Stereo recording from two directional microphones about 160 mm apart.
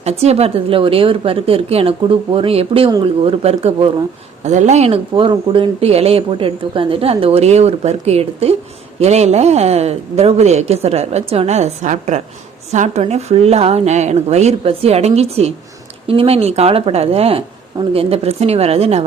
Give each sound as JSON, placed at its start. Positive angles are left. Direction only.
{"t": 0.0, "sound": "speech", "side_deg": -40}